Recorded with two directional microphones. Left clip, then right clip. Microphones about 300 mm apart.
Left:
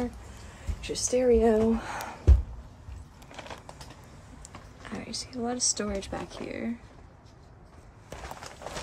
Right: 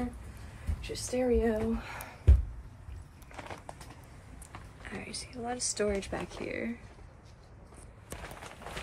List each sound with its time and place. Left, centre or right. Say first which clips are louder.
0.7 s speech: left 6 dB; left
5.0 s speech: left 6 dB; centre